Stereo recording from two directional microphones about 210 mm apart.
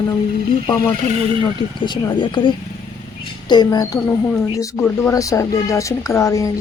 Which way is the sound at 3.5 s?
20° left (ahead or behind).